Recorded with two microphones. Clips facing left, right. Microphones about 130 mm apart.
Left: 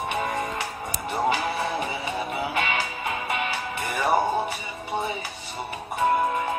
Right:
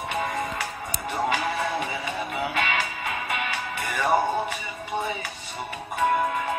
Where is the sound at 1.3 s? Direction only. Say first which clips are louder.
Even; 35° left (ahead or behind).